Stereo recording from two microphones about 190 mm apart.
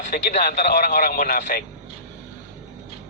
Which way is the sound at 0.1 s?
50° left (ahead or behind).